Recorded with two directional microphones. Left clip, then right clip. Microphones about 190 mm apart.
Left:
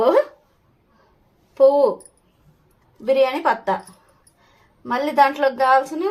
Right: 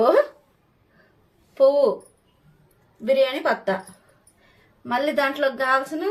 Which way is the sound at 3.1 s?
40° left (ahead or behind).